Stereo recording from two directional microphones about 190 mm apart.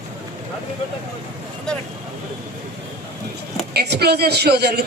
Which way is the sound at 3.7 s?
60° right (ahead or behind).